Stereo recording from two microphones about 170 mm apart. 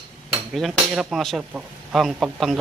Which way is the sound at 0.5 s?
Centre (ahead or behind).